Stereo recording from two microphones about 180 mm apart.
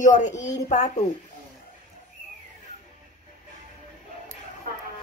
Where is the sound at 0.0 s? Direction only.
45° left (ahead or behind).